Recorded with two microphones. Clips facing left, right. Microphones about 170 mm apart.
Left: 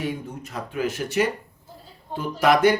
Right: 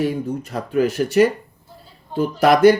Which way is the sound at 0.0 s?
35° right (ahead or behind).